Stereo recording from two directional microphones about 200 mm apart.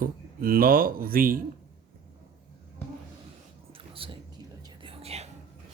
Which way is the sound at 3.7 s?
25° right (ahead or behind).